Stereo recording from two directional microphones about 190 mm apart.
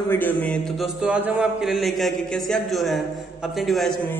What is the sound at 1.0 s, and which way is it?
A man's voice, 5° right (ahead or behind).